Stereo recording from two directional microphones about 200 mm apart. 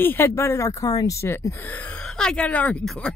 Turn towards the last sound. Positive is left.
turn(degrees=5)  # may be behind; listen again after turning